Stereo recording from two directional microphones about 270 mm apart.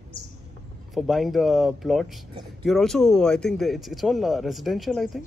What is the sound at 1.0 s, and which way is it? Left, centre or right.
Speech, centre.